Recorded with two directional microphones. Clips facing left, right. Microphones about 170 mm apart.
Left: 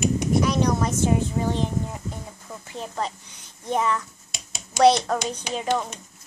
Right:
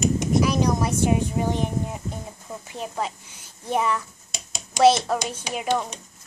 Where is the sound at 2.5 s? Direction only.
15° right (ahead or behind).